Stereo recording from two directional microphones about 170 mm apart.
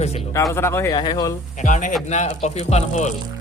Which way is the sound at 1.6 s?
45° left (ahead or behind).